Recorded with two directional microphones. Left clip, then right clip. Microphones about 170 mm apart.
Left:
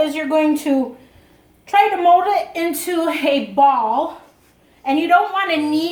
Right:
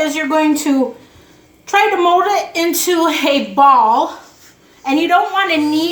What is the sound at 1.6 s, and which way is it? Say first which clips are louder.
A woman's voice: right 1 dB; 20° left (ahead or behind).